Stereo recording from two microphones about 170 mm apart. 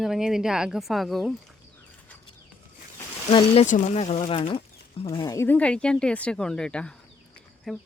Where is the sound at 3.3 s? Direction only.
35° left (ahead or behind).